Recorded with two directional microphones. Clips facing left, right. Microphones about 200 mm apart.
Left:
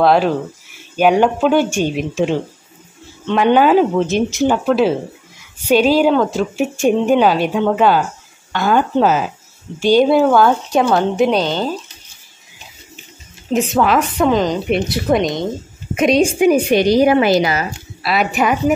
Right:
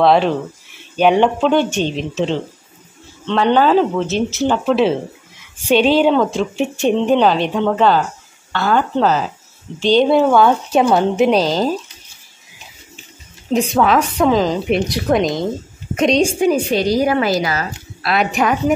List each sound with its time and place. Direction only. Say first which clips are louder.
0.0 s a woman's voice: even; 5° left (ahead or behind)
4.6 s a woman's voice: even; centre (ahead or behind)
11.3 s speech: right 2 dB; 35° right (ahead or behind)
13.5 s a woman's voice: even; 5° left (ahead or behind); by 17.6 s 20° left (ahead or behind)
18.0 s a woman's voice: even; 5° left (ahead or behind)